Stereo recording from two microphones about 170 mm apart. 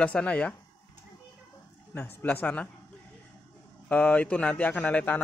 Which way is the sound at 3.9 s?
5° left (ahead or behind).